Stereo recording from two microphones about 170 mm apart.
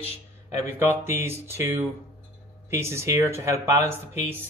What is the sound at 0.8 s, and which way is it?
Speech, 15° right (ahead or behind).